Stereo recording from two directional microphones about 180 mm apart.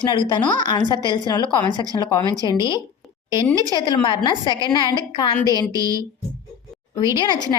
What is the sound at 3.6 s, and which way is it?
A woman's voice, 25° left (ahead or behind).